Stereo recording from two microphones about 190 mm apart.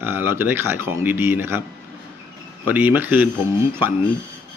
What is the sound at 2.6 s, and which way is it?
Speech, 10° right (ahead or behind).